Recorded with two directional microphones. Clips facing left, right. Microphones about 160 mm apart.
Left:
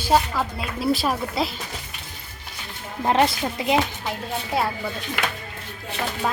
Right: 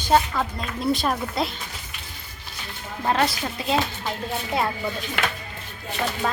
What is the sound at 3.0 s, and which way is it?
Speech, 20° left (ahead or behind).